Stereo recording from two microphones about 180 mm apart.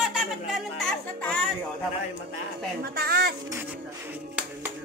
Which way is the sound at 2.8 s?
60° right (ahead or behind).